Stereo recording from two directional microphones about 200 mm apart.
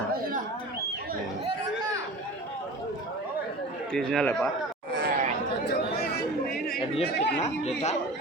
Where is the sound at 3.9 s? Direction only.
5° left (ahead or behind).